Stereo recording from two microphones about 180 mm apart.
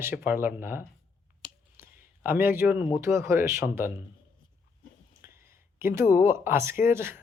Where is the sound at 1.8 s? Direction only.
10° right (ahead or behind).